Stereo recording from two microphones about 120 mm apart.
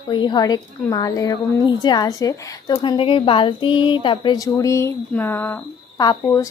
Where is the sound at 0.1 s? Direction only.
40° left (ahead or behind); by 5.5 s 15° left (ahead or behind).